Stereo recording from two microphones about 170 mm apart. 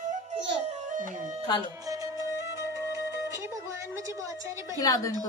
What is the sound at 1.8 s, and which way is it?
Music, 20° right (ahead or behind).